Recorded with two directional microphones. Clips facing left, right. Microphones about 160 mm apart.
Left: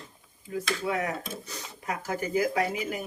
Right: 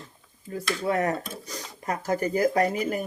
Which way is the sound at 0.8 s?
40° right (ahead or behind).